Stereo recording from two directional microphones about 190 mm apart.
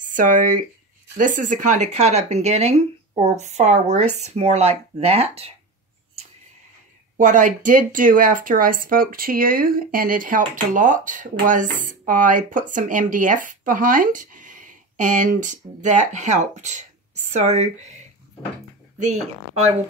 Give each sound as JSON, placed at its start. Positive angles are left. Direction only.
{"t": 0.0, "sound": "speech", "side_deg": -45}
{"t": 7.2, "sound": "speech", "side_deg": -40}